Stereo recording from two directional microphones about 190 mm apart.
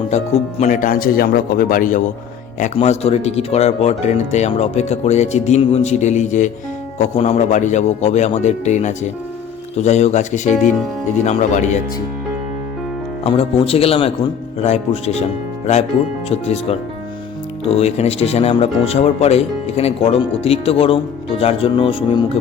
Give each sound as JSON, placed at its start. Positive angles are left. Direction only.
{"t": 0.6, "sound": "a man's voice", "side_deg": 40}
{"t": 13.2, "sound": "speech", "side_deg": 30}